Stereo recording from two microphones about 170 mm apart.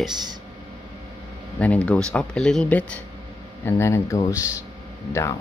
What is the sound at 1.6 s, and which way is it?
Speech, 5° left (ahead or behind).